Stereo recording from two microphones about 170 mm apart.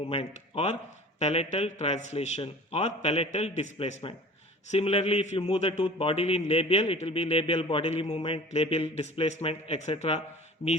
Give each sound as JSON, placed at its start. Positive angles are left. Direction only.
{"t": 0.0, "sound": "a man's voice", "side_deg": 35}